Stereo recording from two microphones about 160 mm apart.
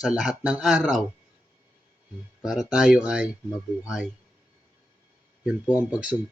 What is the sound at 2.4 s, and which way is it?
Speech, 5° right (ahead or behind).